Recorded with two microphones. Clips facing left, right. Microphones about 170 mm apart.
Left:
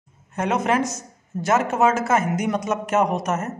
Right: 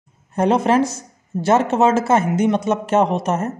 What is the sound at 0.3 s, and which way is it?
Speech, 30° right (ahead or behind).